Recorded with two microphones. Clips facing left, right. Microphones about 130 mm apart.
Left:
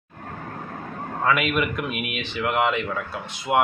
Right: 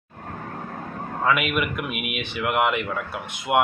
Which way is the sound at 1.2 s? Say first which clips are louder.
Left 1 dB; 5° right (ahead or behind).